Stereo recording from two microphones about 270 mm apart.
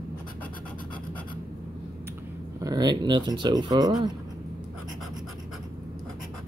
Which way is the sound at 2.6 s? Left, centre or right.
Centre.